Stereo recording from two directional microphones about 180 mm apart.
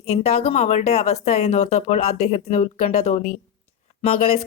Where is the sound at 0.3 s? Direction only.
35° left (ahead or behind).